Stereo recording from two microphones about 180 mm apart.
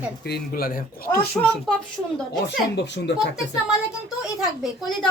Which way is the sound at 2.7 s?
80° left.